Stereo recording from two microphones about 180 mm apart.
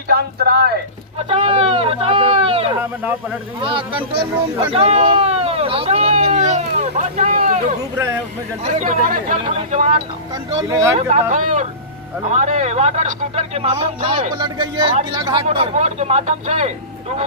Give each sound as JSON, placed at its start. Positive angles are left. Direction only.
{"t": 0.1, "sound": "speech", "side_deg": -60}
{"t": 1.3, "sound": "a sound", "side_deg": -30}
{"t": 3.0, "sound": "speech", "side_deg": -10}
{"t": 3.6, "sound": "speech", "side_deg": -30}
{"t": 9.4, "sound": "speech", "side_deg": -30}
{"t": 10.5, "sound": "speech", "side_deg": -15}
{"t": 11.0, "sound": "speech", "side_deg": -40}
{"t": 14.3, "sound": "speech", "side_deg": -20}
{"t": 15.4, "sound": "speech", "side_deg": -35}